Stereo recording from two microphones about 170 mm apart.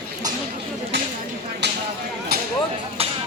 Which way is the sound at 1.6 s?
85° right.